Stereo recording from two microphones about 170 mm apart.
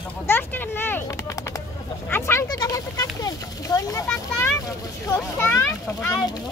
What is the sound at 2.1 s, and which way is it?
A child's voice, 15° left (ahead or behind).